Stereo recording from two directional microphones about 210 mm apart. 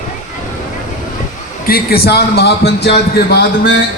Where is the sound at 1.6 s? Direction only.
45° left (ahead or behind).